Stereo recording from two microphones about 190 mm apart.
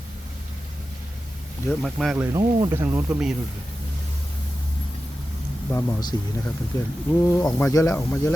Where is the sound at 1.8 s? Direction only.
Centre (ahead or behind).